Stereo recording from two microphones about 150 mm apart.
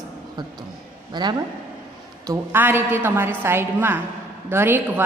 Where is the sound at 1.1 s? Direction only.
30° right (ahead or behind).